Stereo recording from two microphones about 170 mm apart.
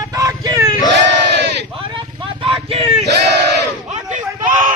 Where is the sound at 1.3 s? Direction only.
90° right.